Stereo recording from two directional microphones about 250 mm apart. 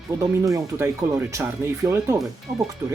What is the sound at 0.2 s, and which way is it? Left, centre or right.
Speech, centre.